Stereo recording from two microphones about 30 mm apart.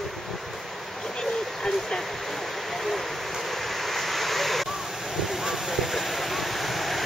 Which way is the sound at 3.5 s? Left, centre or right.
Centre.